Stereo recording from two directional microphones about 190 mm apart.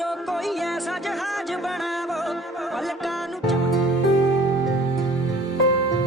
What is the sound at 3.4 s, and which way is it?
Music, centre (ahead or behind).